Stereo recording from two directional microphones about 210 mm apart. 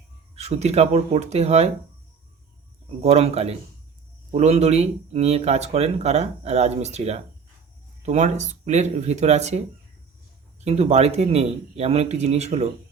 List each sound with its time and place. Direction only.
0.3 s speech: 30° right (ahead or behind)
3.0 s a man's voice: 30° right (ahead or behind)